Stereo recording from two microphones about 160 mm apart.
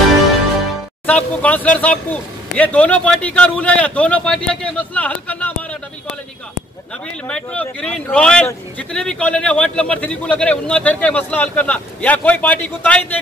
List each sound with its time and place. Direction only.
1.0 s speech: 10° left (ahead or behind)
7.2 s speech: 5° left (ahead or behind)